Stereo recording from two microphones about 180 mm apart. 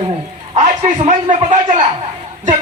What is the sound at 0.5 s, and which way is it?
Speech, 40° right (ahead or behind).